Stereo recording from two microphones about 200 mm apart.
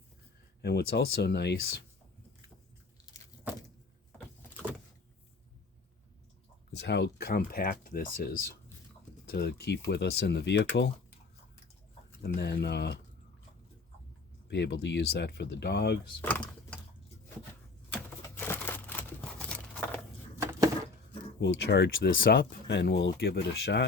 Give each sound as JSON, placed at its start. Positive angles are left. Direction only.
{"t": 0.6, "sound": "speech", "side_deg": 55}
{"t": 6.7, "sound": "speech", "side_deg": 60}
{"t": 9.3, "sound": "speech", "side_deg": 55}
{"t": 12.2, "sound": "speech", "side_deg": 55}
{"t": 14.5, "sound": "speech", "side_deg": 60}
{"t": 16.2, "sound": "a sound", "side_deg": 5}
{"t": 17.9, "sound": "a sound", "side_deg": 10}
{"t": 20.4, "sound": "a sound", "side_deg": -15}
{"t": 21.4, "sound": "speech", "side_deg": 60}